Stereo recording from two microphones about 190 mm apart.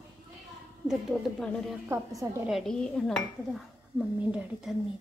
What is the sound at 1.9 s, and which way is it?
Speech, 15° right (ahead or behind).